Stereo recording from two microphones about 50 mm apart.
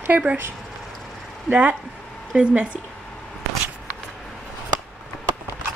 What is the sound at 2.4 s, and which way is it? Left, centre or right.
Speech, right.